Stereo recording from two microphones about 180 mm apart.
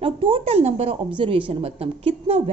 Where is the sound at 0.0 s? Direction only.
30° right (ahead or behind).